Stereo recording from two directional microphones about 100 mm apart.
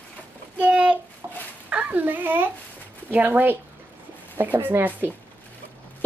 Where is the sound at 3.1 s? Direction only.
20° right (ahead or behind).